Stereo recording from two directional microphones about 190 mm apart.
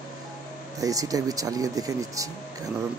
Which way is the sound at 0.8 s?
20° right (ahead or behind).